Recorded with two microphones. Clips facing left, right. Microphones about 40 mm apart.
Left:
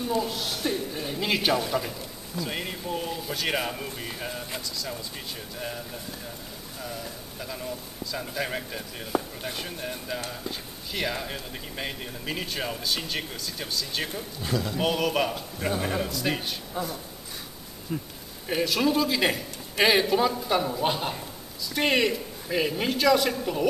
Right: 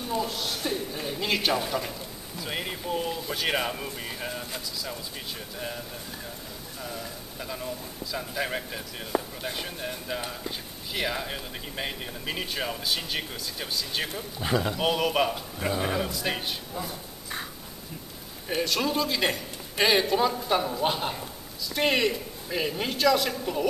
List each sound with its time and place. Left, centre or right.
0.1 s a sound: centre
1.7 s a man's voice: centre
6.8 s a man's voice: centre
14.4 s a man's voice: right
14.8 s a man's voice: centre
18.5 s a man's voice: centre